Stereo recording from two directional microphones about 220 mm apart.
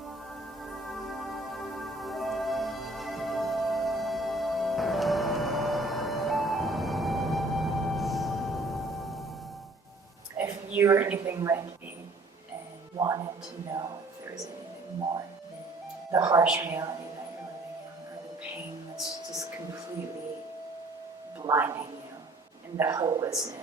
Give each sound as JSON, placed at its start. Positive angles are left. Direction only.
{"t": 0.6, "sound": "music", "side_deg": 0}
{"t": 10.3, "sound": "a woman's voice", "side_deg": -10}
{"t": 13.0, "sound": "music", "side_deg": -15}
{"t": 16.1, "sound": "a woman's voice", "side_deg": -15}
{"t": 21.4, "sound": "a sound", "side_deg": -15}